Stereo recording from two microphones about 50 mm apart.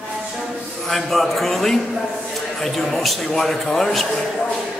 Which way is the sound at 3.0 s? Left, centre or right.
Centre.